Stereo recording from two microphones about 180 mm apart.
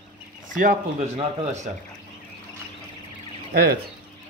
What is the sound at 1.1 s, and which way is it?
Speech, 40° right (ahead or behind).